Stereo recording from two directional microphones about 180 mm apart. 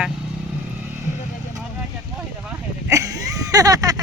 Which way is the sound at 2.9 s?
20° right (ahead or behind).